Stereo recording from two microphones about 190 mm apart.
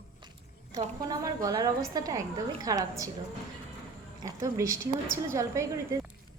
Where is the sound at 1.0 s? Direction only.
20° right (ahead or behind).